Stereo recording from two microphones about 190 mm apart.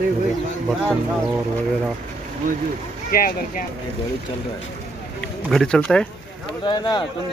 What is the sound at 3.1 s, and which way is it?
Speech, 50° left (ahead or behind).